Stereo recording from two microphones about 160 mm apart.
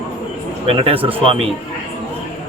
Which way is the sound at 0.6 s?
35° right (ahead or behind).